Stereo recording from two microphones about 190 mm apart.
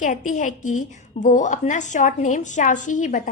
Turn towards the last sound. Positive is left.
turn(degrees=40)  # may be behind; listen again after turning